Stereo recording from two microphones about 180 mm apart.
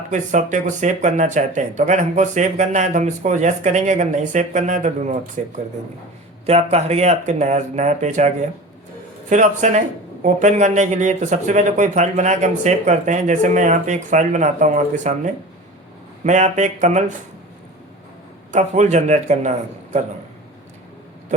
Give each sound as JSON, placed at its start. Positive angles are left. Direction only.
{"t": 0.1, "sound": "speech", "side_deg": -45}
{"t": 6.4, "sound": "speech", "side_deg": -35}
{"t": 18.5, "sound": "speech", "side_deg": -40}